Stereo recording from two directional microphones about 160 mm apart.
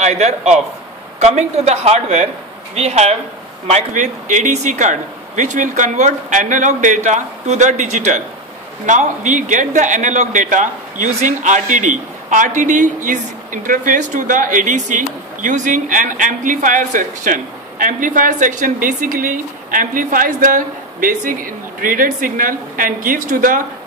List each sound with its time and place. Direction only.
0.0 s a man's voice: 45° right (ahead or behind); by 23.6 s 60° right (ahead or behind)